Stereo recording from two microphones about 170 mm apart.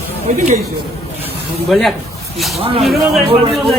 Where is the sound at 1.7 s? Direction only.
Centre (ahead or behind).